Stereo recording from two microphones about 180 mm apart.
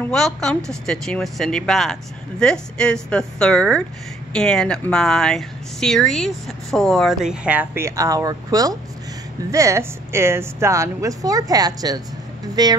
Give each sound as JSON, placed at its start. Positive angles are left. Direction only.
{"t": 0.0, "sound": "speech", "side_deg": 5}